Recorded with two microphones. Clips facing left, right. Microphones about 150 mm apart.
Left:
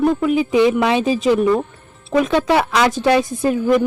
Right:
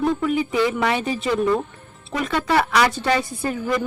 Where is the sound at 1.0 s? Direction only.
90° left.